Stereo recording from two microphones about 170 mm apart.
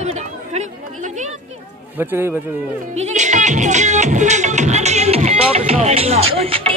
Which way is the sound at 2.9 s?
45° right (ahead or behind).